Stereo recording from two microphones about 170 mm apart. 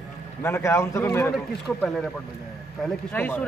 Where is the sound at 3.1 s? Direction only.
10° left (ahead or behind).